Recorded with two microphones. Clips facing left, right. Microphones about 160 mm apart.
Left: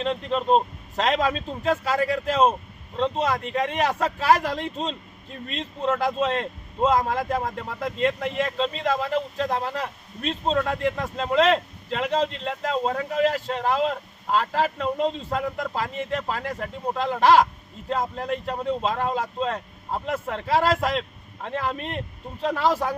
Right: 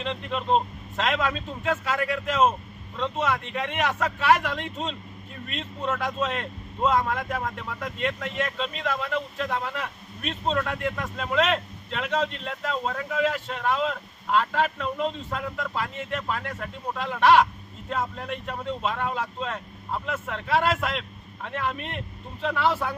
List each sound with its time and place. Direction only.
0.0 s a man's voice: 40° left (ahead or behind)